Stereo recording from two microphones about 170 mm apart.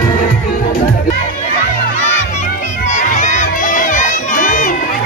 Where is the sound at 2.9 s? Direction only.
45° left (ahead or behind).